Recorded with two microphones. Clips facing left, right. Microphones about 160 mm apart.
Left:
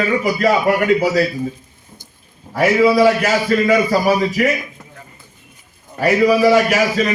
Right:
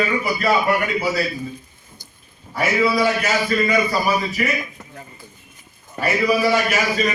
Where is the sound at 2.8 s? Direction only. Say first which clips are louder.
Left 6 dB; 90° left.